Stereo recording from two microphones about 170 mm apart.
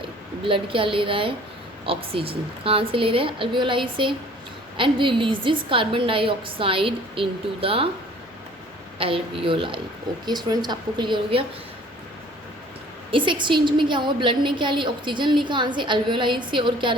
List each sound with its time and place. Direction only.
0.4 s a woman's voice: 30° right (ahead or behind)
9.0 s a woman's voice: 30° right (ahead or behind)
13.1 s a woman's voice: 30° right (ahead or behind)